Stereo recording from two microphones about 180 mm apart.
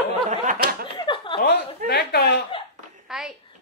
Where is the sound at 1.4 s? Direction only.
70° left (ahead or behind).